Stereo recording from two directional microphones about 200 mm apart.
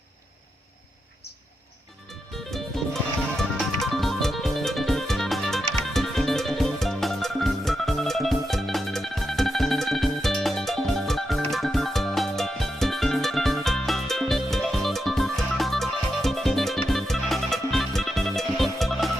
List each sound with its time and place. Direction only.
2.5 s music: centre (ahead or behind)